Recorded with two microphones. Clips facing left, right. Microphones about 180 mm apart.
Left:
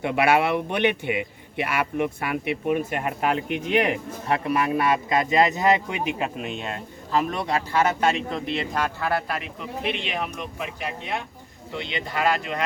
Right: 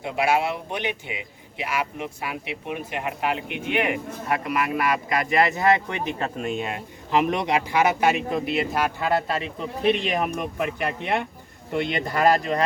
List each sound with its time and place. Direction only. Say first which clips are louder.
0.0 s speech: left 2 dB; 65° left (ahead or behind); by 6.3 s 10° left (ahead or behind)
6.4 s speech: right 3 dB; 5° right (ahead or behind)
7.1 s a man's voice: right 3 dB; 20° right (ahead or behind)
9.0 s speech: right 2 dB; 20° right (ahead or behind); by 12.6 s 40° right (ahead or behind)